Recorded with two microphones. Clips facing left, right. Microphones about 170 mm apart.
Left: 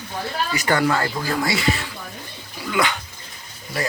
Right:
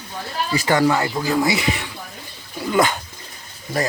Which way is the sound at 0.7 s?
20° right (ahead or behind).